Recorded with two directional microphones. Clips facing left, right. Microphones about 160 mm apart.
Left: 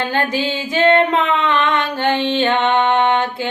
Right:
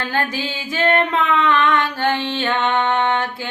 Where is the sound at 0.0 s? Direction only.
20° left (ahead or behind).